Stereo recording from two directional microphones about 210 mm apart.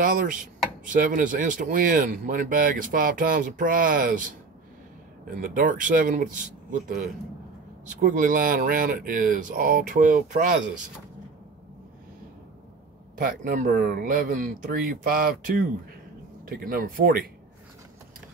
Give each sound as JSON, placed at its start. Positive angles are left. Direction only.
{"t": 0.0, "sound": "speech", "side_deg": -40}
{"t": 5.4, "sound": "speech", "side_deg": -40}
{"t": 13.2, "sound": "speech", "side_deg": -40}